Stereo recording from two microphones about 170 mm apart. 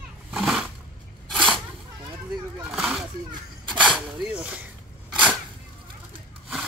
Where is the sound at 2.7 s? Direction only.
5° right (ahead or behind).